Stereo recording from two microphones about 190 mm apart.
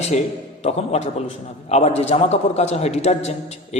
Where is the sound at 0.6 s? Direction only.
35° left (ahead or behind).